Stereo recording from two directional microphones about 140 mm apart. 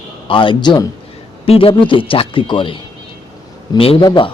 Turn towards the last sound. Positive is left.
turn(degrees=35)  # may be behind; listen again after turning